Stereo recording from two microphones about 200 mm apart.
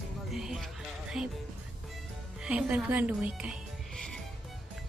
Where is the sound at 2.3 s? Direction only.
5° right (ahead or behind).